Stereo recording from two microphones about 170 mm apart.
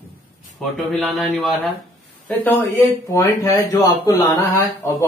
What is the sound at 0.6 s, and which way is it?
Speech, centre (ahead or behind).